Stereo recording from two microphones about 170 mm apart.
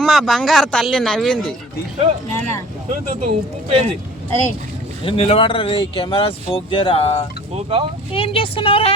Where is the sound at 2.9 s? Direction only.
40° right (ahead or behind).